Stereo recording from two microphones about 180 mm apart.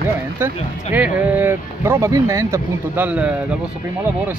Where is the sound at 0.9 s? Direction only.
10° right (ahead or behind).